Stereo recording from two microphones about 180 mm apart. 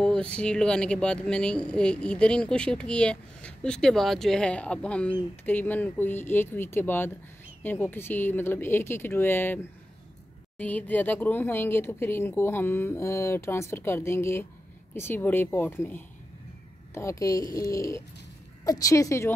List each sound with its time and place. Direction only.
0.0 s speech: 5° left (ahead or behind)